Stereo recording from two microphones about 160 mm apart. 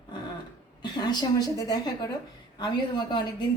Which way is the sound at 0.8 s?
25° left (ahead or behind).